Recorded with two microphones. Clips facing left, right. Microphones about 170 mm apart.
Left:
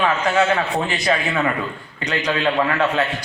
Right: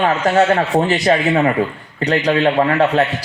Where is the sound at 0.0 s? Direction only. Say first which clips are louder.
Right 4 dB; 40° right (ahead or behind).